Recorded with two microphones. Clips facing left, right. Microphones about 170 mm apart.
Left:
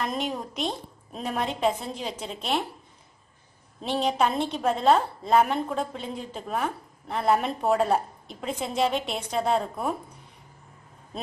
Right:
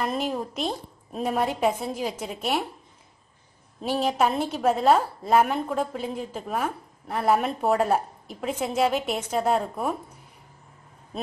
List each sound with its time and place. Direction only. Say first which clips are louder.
0.0 s a woman's voice: right 2 dB; 5° right (ahead or behind)
3.8 s a woman's voice: right 1 dB; 5° right (ahead or behind)